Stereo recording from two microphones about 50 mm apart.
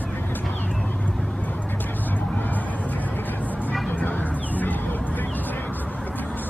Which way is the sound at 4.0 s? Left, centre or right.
Left.